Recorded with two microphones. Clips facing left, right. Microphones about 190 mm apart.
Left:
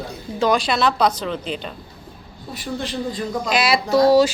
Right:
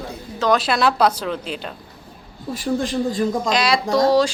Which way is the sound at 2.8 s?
45° right (ahead or behind).